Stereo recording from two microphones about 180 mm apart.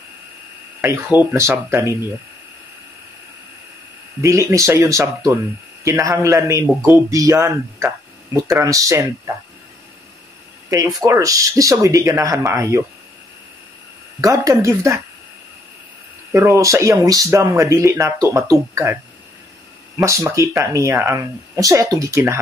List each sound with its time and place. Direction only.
0.7 s a man's voice: 10° right (ahead or behind)
4.2 s a man's voice: 15° right (ahead or behind)
10.7 s a man's voice: 20° right (ahead or behind)
14.2 s a man's voice: 20° right (ahead or behind)
16.3 s a man's voice: 15° right (ahead or behind)
20.0 s a man's voice: 15° right (ahead or behind)